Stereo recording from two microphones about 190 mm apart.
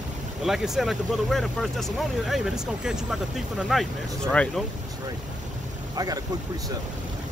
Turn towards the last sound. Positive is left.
turn(degrees=-20)  # may be behind; listen again after turning